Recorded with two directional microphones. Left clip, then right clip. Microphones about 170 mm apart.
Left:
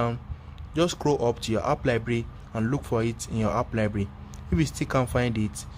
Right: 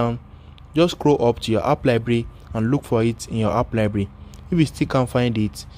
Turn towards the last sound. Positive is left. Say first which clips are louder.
# right 5 dB
turn(degrees=-20)  # may be behind; listen again after turning